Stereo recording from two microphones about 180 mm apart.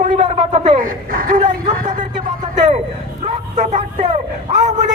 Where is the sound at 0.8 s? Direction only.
50° right (ahead or behind).